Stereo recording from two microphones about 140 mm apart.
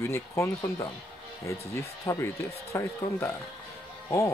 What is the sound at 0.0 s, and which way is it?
Speech, 20° left (ahead or behind).